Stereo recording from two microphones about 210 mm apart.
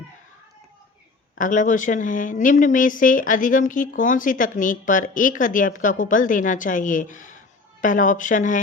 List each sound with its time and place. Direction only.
1.4 s speech: 40° left (ahead or behind)